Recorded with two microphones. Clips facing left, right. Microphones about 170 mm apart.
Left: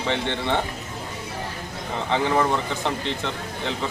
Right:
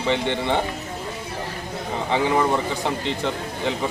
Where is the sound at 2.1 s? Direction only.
15° right (ahead or behind).